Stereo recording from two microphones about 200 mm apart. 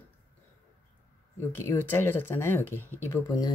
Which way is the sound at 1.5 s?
10° left (ahead or behind).